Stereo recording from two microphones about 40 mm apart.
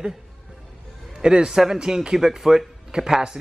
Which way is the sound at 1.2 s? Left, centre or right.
Centre.